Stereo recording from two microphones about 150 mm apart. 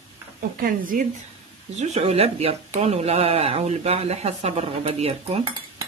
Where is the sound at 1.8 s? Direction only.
45° right (ahead or behind).